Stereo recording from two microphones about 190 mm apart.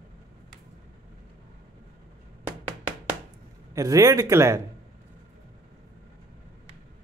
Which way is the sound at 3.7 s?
20° right (ahead or behind).